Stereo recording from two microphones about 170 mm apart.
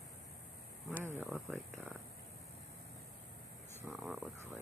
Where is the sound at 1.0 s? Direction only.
10° right (ahead or behind).